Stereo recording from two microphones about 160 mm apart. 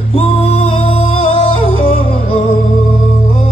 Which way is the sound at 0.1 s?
40° left (ahead or behind).